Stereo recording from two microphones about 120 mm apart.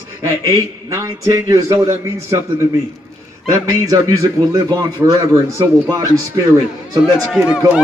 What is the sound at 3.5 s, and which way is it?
A man's voice, 30° right (ahead or behind).